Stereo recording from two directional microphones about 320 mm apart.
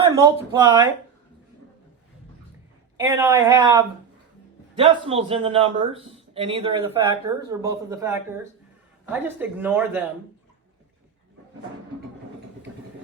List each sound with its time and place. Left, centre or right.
0.2 s a man's voice: centre
3.0 s a man's voice: centre